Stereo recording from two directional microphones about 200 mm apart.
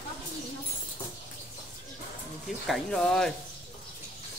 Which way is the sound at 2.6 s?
Centre (ahead or behind).